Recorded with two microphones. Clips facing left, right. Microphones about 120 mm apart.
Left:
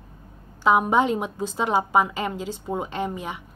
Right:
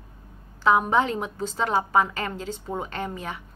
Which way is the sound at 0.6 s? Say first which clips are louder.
Left 2 dB; 10° left (ahead or behind).